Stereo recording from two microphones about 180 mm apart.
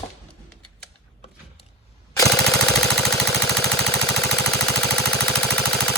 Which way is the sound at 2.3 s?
Centre (ahead or behind).